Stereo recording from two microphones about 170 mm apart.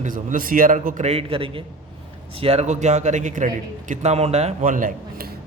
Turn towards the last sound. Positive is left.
turn(degrees=-50)  # may be behind; listen again after turning